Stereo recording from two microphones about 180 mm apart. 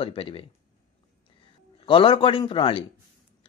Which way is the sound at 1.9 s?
30° left (ahead or behind).